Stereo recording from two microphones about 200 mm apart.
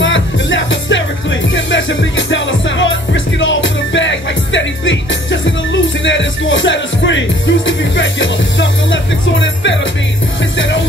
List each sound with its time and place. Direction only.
0.0 s music: 70° left (ahead or behind)